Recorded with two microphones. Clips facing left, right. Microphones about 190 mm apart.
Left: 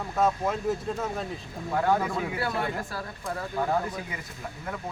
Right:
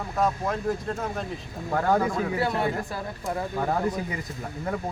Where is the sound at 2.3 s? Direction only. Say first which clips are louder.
Right 4 dB; 20° right (ahead or behind).